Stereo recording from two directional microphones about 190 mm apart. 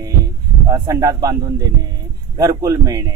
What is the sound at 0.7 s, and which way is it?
Speech, 20° right (ahead or behind).